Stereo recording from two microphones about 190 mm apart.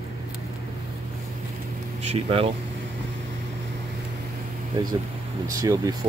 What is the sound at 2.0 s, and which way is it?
Speech, 30° right (ahead or behind).